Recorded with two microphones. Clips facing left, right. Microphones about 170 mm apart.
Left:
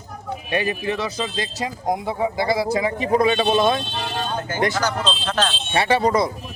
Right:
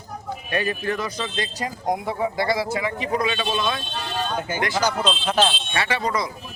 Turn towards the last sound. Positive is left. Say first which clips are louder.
# left 6 dB
turn(degrees=30)  # may be behind; listen again after turning